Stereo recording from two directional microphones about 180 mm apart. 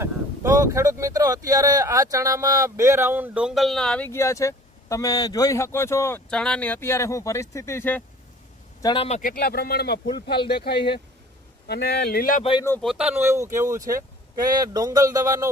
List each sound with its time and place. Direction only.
0.0 s speech: 15° right (ahead or behind); by 8.0 s 10° left (ahead or behind)
8.8 s a man's voice: 30° left (ahead or behind)
9.2 s speech: 55° left (ahead or behind)
12.8 s speech: 5° right (ahead or behind)